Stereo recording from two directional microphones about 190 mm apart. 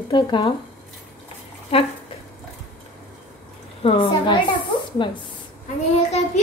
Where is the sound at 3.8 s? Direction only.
25° left (ahead or behind).